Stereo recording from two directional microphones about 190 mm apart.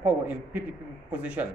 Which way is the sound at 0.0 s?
10° right (ahead or behind).